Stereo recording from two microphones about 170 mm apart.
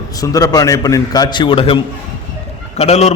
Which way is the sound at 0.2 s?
20° left (ahead or behind).